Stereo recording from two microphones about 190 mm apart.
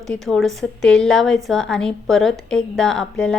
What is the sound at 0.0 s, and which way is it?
A woman's voice, centre (ahead or behind).